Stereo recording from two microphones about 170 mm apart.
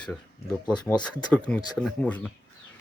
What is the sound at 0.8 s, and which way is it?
Speech, 25° left (ahead or behind).